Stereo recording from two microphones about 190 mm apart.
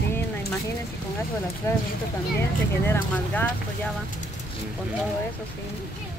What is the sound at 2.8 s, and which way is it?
Speech, 10° left (ahead or behind).